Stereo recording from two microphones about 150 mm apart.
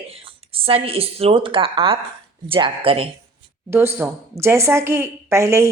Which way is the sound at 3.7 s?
15° right (ahead or behind).